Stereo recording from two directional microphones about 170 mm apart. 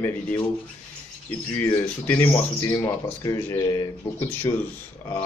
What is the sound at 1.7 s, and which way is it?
Speech, 10° left (ahead or behind).